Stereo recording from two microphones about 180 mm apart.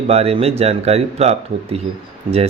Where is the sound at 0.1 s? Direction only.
35° right (ahead or behind).